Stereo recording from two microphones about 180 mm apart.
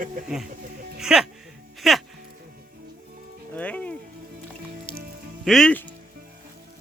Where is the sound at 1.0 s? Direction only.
5° right (ahead or behind).